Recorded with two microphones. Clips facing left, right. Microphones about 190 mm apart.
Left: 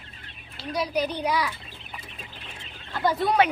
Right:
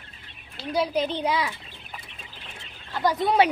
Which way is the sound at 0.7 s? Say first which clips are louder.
Right 2 dB; 30° right (ahead or behind).